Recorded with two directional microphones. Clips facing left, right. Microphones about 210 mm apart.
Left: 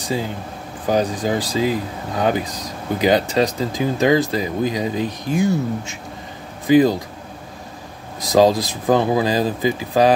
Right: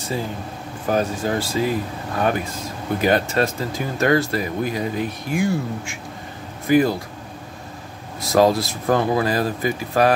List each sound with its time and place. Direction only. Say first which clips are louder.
0.8 s speech: left 2 dB; 15° left (ahead or behind)
8.2 s speech: left 2 dB; 15° left (ahead or behind)